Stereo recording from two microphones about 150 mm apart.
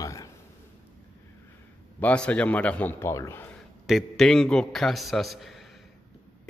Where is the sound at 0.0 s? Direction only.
20° left (ahead or behind).